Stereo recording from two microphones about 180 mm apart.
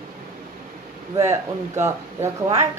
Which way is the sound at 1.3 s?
15° right (ahead or behind).